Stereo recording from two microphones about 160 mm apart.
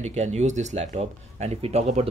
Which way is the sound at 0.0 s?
45° right (ahead or behind).